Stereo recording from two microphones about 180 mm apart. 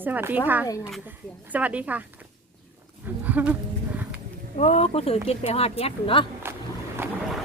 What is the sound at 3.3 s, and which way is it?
Speech, 10° right (ahead or behind).